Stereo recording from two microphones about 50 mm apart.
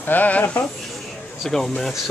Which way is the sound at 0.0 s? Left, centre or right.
Left.